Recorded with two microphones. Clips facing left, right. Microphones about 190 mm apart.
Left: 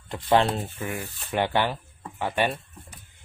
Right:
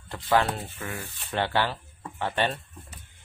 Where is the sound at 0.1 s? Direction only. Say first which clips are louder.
Left 3 dB; 25° left (ahead or behind).